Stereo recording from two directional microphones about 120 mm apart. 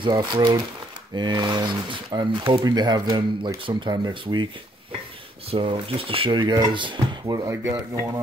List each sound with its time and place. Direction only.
0.0 s speech: 40° right (ahead or behind)
5.5 s speech: 50° right (ahead or behind)